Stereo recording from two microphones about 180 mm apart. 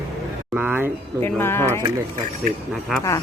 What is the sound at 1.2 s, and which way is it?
Speech, 10° left (ahead or behind).